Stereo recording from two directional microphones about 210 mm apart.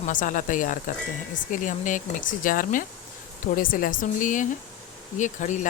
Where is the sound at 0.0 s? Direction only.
40° left (ahead or behind).